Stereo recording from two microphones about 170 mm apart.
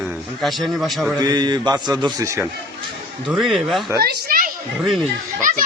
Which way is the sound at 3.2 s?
Centre (ahead or behind).